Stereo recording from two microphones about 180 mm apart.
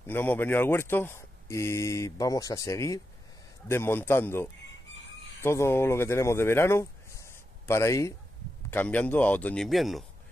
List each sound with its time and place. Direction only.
0.0 s speech: 10° left (ahead or behind)